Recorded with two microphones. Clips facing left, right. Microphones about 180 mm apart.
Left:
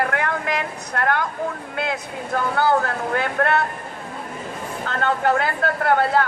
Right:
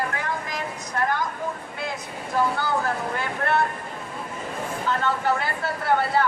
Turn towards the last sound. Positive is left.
turn(degrees=60)  # may be behind; listen again after turning